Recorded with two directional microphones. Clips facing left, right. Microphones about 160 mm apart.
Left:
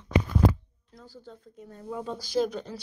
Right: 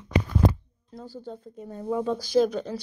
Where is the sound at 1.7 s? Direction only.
80° right.